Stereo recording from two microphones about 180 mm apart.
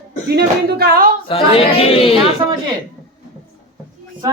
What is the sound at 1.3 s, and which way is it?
Speech, 30° left (ahead or behind).